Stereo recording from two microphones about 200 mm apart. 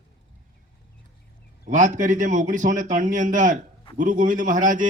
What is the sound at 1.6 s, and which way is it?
A man's voice, 40° right (ahead or behind).